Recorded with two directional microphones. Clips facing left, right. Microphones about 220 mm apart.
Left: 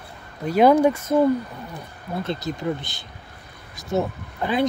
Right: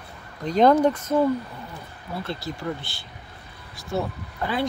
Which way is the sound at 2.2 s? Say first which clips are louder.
Left 4 dB; 20° left (ahead or behind).